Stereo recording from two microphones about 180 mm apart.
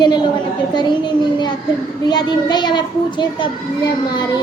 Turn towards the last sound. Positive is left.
turn(degrees=25)  # may be behind; listen again after turning